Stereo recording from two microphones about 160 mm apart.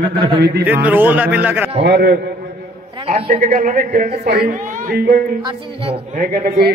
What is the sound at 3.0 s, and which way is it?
A woman's voice, 45° right (ahead or behind).